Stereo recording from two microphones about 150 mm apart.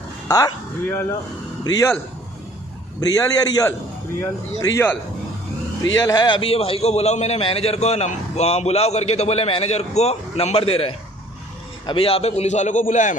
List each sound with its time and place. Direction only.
0.3 s speech: 20° left (ahead or behind)
3.0 s speech: 25° left (ahead or behind)
5.9 s a man's voice: 25° left (ahead or behind); by 13.1 s 55° left (ahead or behind)